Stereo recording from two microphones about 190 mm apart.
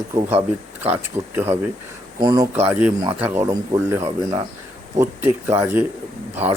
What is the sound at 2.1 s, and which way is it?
Speech, 20° right (ahead or behind).